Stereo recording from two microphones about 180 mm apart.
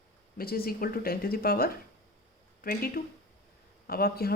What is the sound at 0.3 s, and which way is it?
A woman's voice, 55° left (ahead or behind).